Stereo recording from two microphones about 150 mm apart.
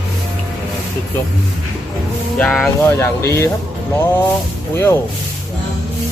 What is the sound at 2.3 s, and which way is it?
Speech, 5° left (ahead or behind).